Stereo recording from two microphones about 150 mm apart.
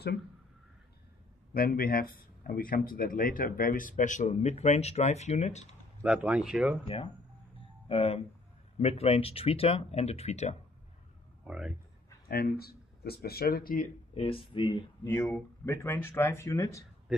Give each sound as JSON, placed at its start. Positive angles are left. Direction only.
{"t": 1.5, "sound": "speech", "side_deg": 80}
{"t": 6.0, "sound": "speech", "side_deg": -5}
{"t": 7.5, "sound": "a sound", "side_deg": 40}
{"t": 8.7, "sound": "speech", "side_deg": 40}
{"t": 11.4, "sound": "speech", "side_deg": -5}
{"t": 12.3, "sound": "speech", "side_deg": 90}
{"t": 14.1, "sound": "speech", "side_deg": 40}
{"t": 15.2, "sound": "speech", "side_deg": 15}